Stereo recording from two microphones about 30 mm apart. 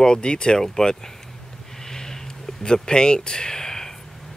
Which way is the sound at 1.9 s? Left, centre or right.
Centre.